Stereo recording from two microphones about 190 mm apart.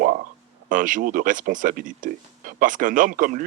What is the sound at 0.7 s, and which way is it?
Speech, 45° right (ahead or behind).